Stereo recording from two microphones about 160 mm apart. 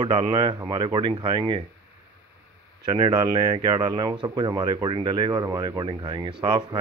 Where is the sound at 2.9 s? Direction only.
30° right (ahead or behind).